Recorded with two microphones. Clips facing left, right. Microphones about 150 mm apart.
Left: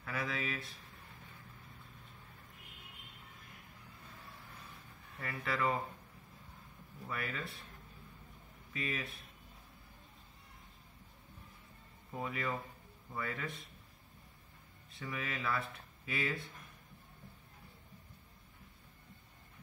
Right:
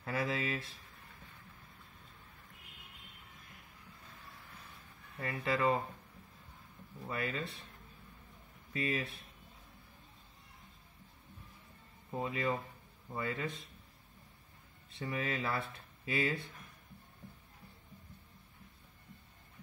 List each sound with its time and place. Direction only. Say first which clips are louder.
0.0 s speech: right 4 dB; 30° right (ahead or behind)
5.2 s speech: right 3 dB; 20° right (ahead or behind)
7.1 s speech: right 3 dB; 25° right (ahead or behind)
8.7 s speech: right 5 dB; 30° right (ahead or behind)
12.2 s speech: right 3 dB; 20° right (ahead or behind)
15.0 s speech: right 4 dB; 30° right (ahead or behind)